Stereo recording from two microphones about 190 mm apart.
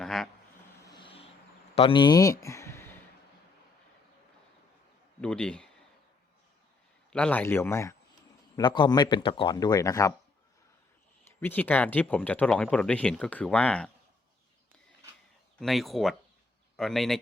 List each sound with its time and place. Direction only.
0.0 s a sound: centre (ahead or behind)
0.9 s vehicle: 25° left (ahead or behind)
1.7 s speech: 25° left (ahead or behind)
5.2 s a man's voice: 5° left (ahead or behind)
7.1 s speech: 5° left (ahead or behind)
11.3 s speech: 10° left (ahead or behind)
15.6 s a man's voice: centre (ahead or behind)